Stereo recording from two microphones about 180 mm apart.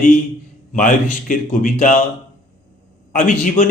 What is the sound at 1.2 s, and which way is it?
Speech, 45° left (ahead or behind).